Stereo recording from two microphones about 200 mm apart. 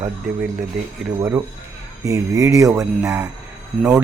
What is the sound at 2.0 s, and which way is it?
Speech, 15° right (ahead or behind).